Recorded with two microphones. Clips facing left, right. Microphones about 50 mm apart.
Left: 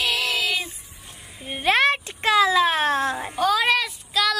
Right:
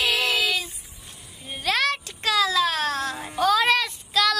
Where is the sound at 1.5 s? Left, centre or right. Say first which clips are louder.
Left 5 dB; left.